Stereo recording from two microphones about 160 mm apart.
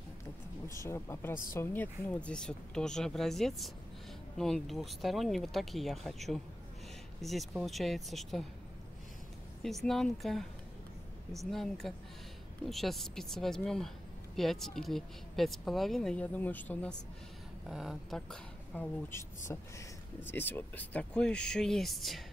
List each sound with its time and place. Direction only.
0.7 s speech: 15° left (ahead or behind); by 8.5 s centre (ahead or behind)
9.6 s speech: centre (ahead or behind)
11.5 s speech: centre (ahead or behind)
17.6 s speech: centre (ahead or behind)
19.0 s speech: 15° left (ahead or behind); by 22.2 s centre (ahead or behind)